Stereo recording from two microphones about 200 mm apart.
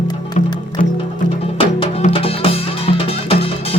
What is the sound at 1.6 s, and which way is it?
Music, 25° left (ahead or behind).